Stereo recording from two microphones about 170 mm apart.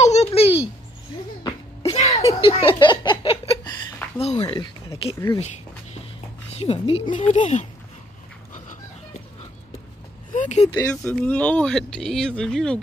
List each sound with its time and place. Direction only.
0.0 s a sound: 40° left (ahead or behind)
1.8 s a sound: 35° left (ahead or behind)
4.6 s speech: 30° left (ahead or behind)
6.5 s speech: 35° left (ahead or behind)
10.3 s vehicle: 45° left (ahead or behind)
10.7 s speech: 20° left (ahead or behind)